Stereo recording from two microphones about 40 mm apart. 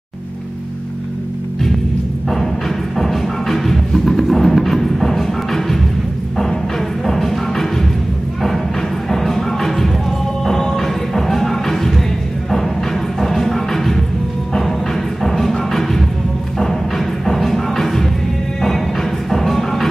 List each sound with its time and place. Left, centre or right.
3.0 s music: centre
7.1 s music: centre
9.1 s music: centre
13.2 s music: centre
15.2 s music: centre
17.2 s music: centre
19.3 s music: centre